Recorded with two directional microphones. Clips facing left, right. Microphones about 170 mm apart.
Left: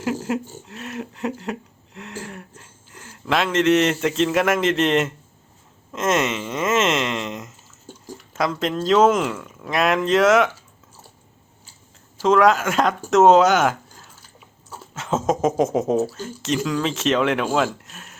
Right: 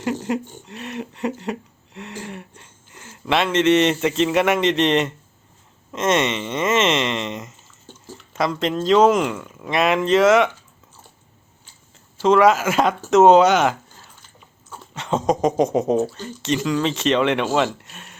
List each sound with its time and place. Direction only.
0.0 s speech: 5° left (ahead or behind)
7.9 s a sound: 10° left (ahead or behind)
8.3 s speech: centre (ahead or behind)
12.2 s speech: centre (ahead or behind)